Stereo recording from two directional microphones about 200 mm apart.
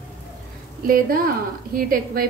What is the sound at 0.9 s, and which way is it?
A woman's voice, 45° right (ahead or behind).